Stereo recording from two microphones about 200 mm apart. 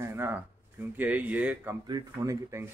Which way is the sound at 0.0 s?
10° right (ahead or behind).